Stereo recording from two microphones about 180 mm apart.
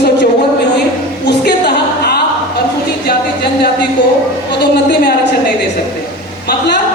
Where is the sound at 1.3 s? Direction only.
70° left (ahead or behind).